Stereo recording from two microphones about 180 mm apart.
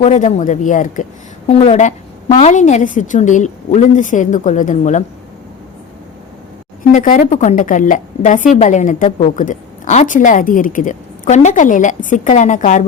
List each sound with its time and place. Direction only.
0.0 s a woman's voice: 40° left (ahead or behind)
6.9 s a woman's voice: 40° left (ahead or behind)